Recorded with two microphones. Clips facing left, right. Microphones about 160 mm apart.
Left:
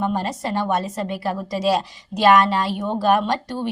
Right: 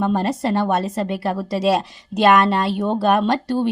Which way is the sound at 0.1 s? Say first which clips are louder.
Right 4 dB; 25° right (ahead or behind).